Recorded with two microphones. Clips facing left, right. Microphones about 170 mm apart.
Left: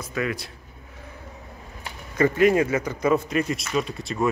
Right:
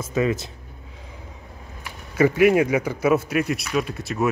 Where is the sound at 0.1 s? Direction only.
25° right (ahead or behind).